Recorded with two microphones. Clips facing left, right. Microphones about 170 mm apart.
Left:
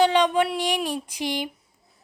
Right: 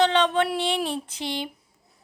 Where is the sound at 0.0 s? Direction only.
10° left (ahead or behind).